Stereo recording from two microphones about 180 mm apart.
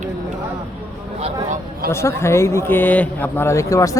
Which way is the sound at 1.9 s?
15° left (ahead or behind).